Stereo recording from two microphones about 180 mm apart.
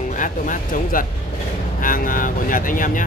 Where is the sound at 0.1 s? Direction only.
45° left (ahead or behind).